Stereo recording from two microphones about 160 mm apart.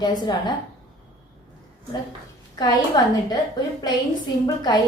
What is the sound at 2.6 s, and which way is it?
Speech, 25° left (ahead or behind).